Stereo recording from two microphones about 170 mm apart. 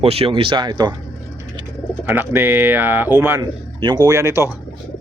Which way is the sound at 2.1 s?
10° right (ahead or behind).